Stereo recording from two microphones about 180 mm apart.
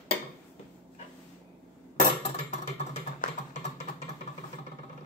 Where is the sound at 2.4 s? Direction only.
35° left (ahead or behind).